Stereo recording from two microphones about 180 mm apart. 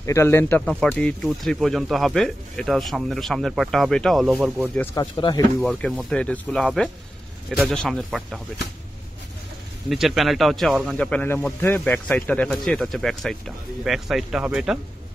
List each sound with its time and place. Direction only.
0.0 s speech: 15° left (ahead or behind)
4.9 s speech: 25° left (ahead or behind)
5.6 s speech: centre (ahead or behind)
9.8 s speech: centre (ahead or behind)